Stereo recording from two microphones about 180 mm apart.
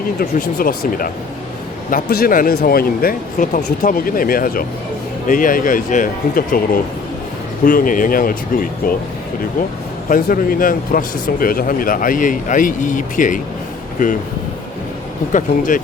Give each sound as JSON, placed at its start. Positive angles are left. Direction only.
{"t": 0.2, "sound": "speech", "side_deg": 55}
{"t": 7.6, "sound": "speech", "side_deg": 50}
{"t": 10.1, "sound": "speech", "side_deg": 50}
{"t": 15.3, "sound": "speech", "side_deg": 45}